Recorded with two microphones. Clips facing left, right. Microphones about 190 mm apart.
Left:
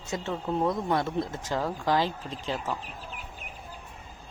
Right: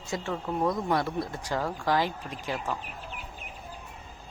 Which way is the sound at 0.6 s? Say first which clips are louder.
Right 1 dB; 5° left (ahead or behind).